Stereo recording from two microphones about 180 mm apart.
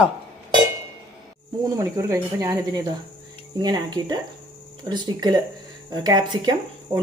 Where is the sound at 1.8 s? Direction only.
15° right (ahead or behind).